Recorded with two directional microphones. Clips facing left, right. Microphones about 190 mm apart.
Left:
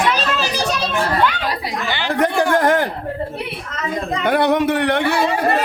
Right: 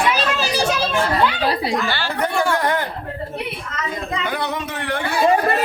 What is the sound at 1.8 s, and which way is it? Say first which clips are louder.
Chatter: left 1 dB; 15° left (ahead or behind).